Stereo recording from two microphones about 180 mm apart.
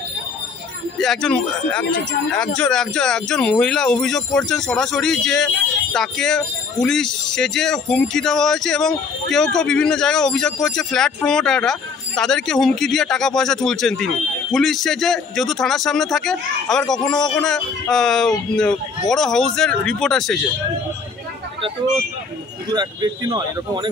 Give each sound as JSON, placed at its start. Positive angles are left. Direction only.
{"t": 0.9, "sound": "speech", "side_deg": 0}
{"t": 22.7, "sound": "speech", "side_deg": -25}